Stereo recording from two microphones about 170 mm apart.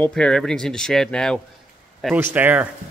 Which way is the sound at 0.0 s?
5° left (ahead or behind).